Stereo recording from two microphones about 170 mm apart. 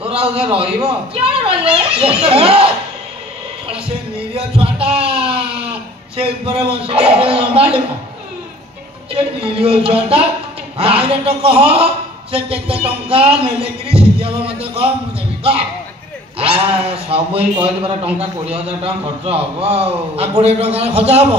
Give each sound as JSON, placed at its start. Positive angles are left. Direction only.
{"t": 0.0, "sound": "a man's voice", "side_deg": -35}
{"t": 4.6, "sound": "a sound", "side_deg": -35}
{"t": 9.1, "sound": "a man's voice", "side_deg": -35}
{"t": 16.3, "sound": "a man's voice", "side_deg": -35}